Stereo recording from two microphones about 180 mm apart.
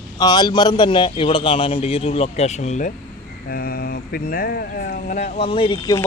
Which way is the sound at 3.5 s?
60° left (ahead or behind).